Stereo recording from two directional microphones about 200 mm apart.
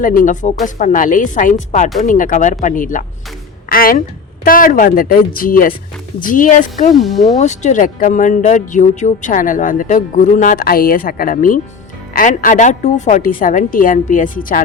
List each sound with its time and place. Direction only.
0.0 s a woman's voice: 45° left (ahead or behind)